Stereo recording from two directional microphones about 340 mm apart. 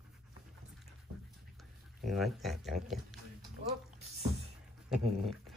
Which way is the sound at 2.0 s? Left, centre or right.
Centre.